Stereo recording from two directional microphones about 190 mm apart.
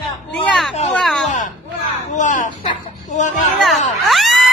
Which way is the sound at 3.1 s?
40° left (ahead or behind).